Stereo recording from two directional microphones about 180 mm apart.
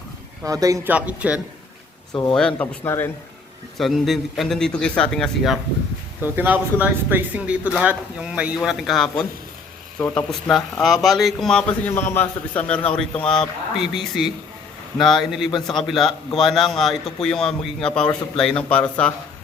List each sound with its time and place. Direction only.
0.4 s speech: 20° right (ahead or behind)
0.9 s speech: 5° right (ahead or behind)
2.3 s speech: 5° left (ahead or behind)
3.8 s a man's voice: centre (ahead or behind)
6.2 s a man's voice: 10° right (ahead or behind); by 19.1 s 5° left (ahead or behind)